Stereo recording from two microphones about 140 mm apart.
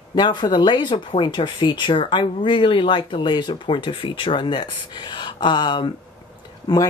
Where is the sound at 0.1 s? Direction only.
35° left (ahead or behind).